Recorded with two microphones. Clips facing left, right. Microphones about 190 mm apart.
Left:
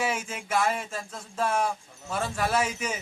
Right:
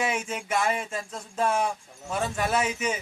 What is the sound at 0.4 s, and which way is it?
Speech, 5° right (ahead or behind).